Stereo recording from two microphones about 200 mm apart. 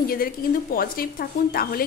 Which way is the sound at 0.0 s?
45° left (ahead or behind).